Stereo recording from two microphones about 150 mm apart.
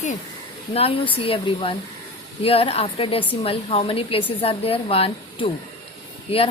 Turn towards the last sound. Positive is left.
turn(degrees=40)  # may be behind; listen again after turning